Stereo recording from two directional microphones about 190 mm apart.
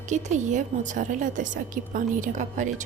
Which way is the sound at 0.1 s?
40° right (ahead or behind).